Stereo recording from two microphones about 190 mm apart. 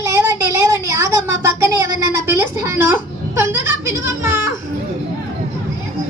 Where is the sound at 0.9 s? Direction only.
15° right (ahead or behind).